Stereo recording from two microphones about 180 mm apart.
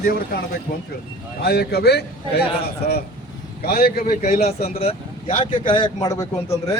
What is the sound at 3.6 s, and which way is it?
A man's voice, 55° left (ahead or behind).